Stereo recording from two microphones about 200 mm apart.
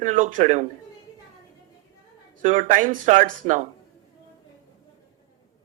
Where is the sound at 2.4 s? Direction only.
40° right (ahead or behind).